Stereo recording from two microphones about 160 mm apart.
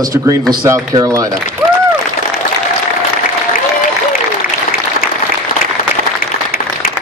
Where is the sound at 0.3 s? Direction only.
20° right (ahead or behind).